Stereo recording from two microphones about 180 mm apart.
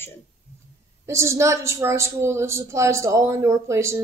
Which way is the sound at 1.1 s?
15° right (ahead or behind).